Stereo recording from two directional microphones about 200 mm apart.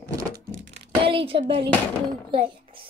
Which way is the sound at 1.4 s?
30° right (ahead or behind).